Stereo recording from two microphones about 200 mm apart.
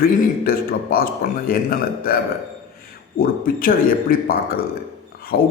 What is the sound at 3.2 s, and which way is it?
A man's voice, 45° left (ahead or behind).